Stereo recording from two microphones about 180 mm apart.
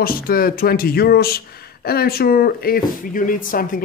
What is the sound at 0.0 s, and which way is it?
Speech, 55° left (ahead or behind).